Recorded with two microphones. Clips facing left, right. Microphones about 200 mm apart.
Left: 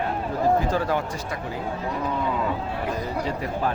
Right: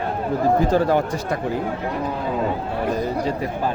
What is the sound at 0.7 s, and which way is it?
Speech, 35° right (ahead or behind).